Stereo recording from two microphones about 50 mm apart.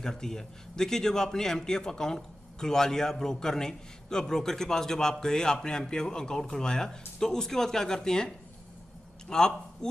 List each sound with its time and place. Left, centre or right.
0.0 s a man's voice: centre